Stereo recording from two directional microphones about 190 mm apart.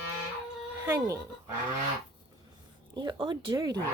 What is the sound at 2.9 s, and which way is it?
Speech, 25° right (ahead or behind).